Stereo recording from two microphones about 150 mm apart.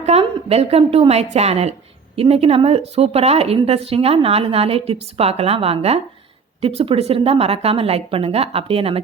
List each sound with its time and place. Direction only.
0.0 s a woman's voice: 40° right (ahead or behind)